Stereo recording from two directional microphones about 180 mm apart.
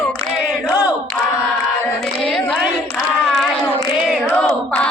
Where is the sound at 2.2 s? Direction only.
Centre (ahead or behind).